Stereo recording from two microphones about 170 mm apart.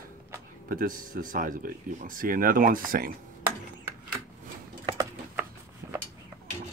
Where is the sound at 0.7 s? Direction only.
55° right (ahead or behind).